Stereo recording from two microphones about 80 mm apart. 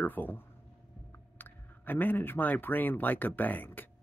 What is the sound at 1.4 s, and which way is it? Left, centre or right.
Speech, left.